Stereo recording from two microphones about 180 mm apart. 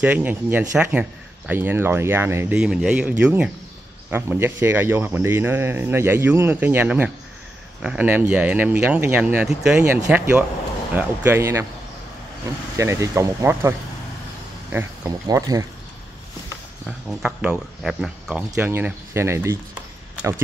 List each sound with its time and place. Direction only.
0.0 s speech: 10° right (ahead or behind)
12.7 s speech: 15° right (ahead or behind)
16.8 s speech: 5° right (ahead or behind)